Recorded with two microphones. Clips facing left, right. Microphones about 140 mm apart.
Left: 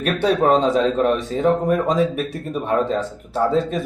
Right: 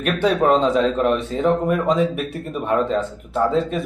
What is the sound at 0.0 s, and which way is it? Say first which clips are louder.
Speech: even; 35° left (ahead or behind).